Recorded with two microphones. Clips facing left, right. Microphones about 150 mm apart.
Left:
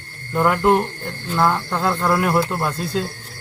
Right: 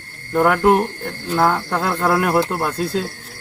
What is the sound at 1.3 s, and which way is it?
A man's voice, 50° right (ahead or behind).